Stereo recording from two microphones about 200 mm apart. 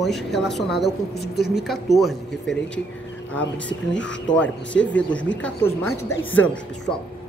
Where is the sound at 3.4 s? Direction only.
65° left (ahead or behind).